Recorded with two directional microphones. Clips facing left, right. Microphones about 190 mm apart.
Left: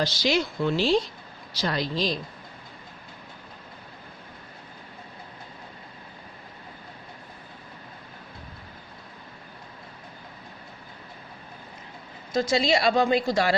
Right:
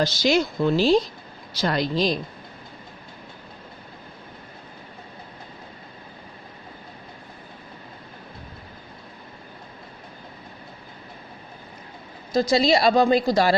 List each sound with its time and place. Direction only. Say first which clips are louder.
0.0 s a woman's voice: right 4 dB; 45° right (ahead or behind)
1.6 s speech: right 4 dB; 50° right (ahead or behind)
12.3 s a woman's voice: right 4 dB; 35° right (ahead or behind)